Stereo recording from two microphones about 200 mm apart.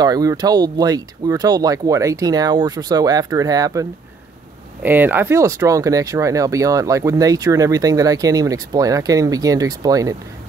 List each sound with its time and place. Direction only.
0.0 s speech: 20° right (ahead or behind)
4.8 s speech: 10° right (ahead or behind)